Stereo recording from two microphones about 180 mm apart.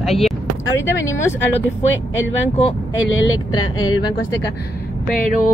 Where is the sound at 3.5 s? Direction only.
20° left (ahead or behind).